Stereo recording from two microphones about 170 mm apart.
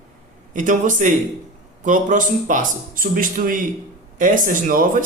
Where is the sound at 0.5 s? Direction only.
50° right (ahead or behind).